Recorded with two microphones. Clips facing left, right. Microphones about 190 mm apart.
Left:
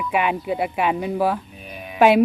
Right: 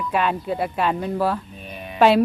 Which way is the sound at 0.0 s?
15° left (ahead or behind).